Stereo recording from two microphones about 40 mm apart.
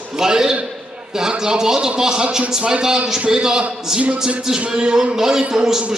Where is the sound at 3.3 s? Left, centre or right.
Centre.